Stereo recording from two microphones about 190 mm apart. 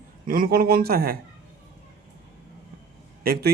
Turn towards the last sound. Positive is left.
turn(degrees=-55)  # may be behind; listen again after turning